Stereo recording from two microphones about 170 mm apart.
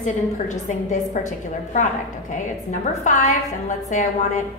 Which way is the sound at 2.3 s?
45° left (ahead or behind).